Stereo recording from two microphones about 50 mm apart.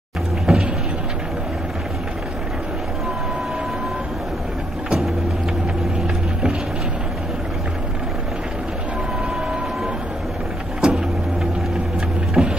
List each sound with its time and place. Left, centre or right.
0.5 s vehicle: centre
10.8 s vehicle: centre
12.4 s printer: centre